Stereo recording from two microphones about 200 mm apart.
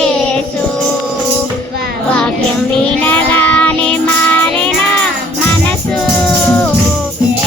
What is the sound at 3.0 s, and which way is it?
Child singing, 10° left (ahead or behind).